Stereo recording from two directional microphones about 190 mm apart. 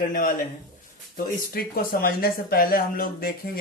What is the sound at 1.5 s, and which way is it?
Speech, 50° left (ahead or behind).